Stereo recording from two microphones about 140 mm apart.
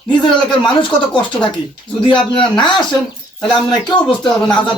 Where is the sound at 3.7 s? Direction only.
30° left (ahead or behind).